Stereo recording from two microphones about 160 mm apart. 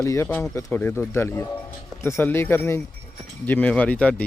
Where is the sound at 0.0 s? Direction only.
15° left (ahead or behind).